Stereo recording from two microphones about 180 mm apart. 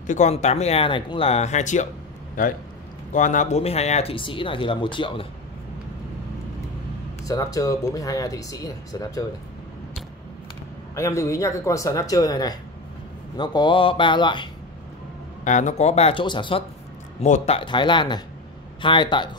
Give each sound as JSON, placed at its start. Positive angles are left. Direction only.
{"t": 0.0, "sound": "speech", "side_deg": 40}
{"t": 7.2, "sound": "speech", "side_deg": 20}
{"t": 11.0, "sound": "speech", "side_deg": 15}
{"t": 15.4, "sound": "speech", "side_deg": 40}
{"t": 17.2, "sound": "speech", "side_deg": 35}